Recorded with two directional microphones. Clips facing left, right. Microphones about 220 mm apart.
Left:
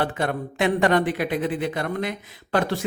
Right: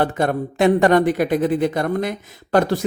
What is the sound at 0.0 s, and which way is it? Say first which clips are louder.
Speech: right 5 dB; 45° right (ahead or behind).